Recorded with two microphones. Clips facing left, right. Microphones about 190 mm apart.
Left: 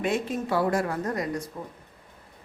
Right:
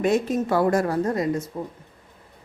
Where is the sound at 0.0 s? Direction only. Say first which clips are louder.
Right 6 dB; 40° right (ahead or behind).